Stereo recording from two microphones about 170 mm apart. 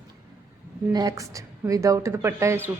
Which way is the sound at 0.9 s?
20° right (ahead or behind).